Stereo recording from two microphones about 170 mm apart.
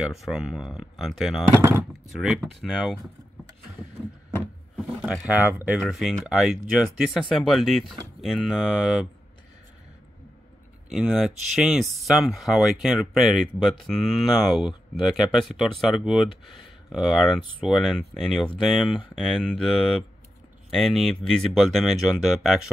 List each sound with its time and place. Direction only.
0.0 s speech: centre (ahead or behind)
1.5 s speech: 15° right (ahead or behind)
2.1 s speech: centre (ahead or behind)
5.0 s speech: 5° right (ahead or behind)
10.9 s speech: centre (ahead or behind)